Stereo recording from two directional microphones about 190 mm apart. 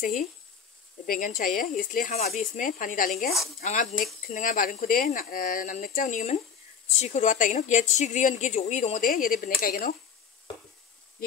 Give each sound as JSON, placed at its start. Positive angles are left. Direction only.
{"t": 0.0, "sound": "speech", "side_deg": 45}